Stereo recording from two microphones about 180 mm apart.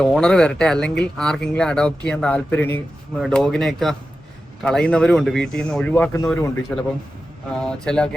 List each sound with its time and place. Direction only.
0.0 s speech: 5° left (ahead or behind)
7.5 s speech: 5° left (ahead or behind)